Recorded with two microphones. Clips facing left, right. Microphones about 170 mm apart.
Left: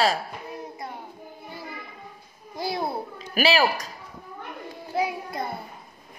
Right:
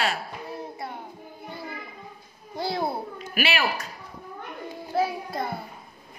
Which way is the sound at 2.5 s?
25° right (ahead or behind).